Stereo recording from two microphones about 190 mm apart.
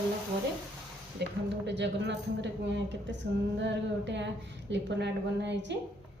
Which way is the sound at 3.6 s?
70° right (ahead or behind).